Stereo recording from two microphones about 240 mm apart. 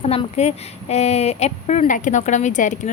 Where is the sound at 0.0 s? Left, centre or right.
Left.